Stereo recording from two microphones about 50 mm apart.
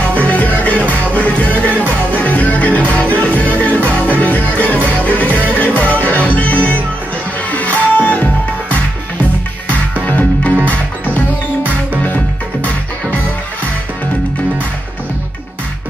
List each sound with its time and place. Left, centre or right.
0.3 s music: left
10.0 s music: left
12.6 s music: left